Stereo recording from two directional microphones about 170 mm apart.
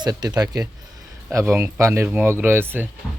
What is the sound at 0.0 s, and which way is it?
A man's voice, 25° right (ahead or behind).